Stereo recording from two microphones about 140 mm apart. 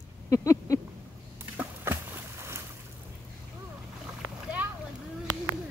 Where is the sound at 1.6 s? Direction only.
15° right (ahead or behind).